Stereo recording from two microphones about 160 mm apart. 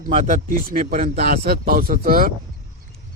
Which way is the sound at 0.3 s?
55° right (ahead or behind).